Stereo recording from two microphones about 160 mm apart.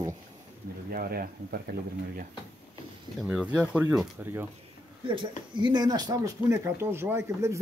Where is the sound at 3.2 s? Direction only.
5° right (ahead or behind).